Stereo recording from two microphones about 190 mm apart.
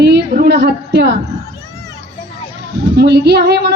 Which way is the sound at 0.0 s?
60° right (ahead or behind).